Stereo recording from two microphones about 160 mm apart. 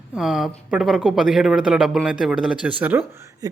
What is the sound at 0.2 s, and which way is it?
Speech, 5° right (ahead or behind).